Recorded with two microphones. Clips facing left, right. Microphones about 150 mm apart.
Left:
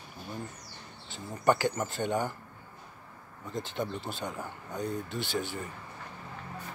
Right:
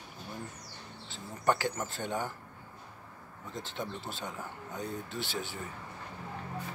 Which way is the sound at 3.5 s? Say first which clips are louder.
Left 5 dB; centre (ahead or behind).